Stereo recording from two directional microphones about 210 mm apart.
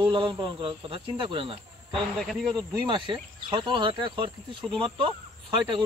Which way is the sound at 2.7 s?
20° right (ahead or behind).